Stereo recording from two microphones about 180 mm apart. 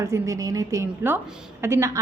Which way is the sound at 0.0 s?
15° right (ahead or behind).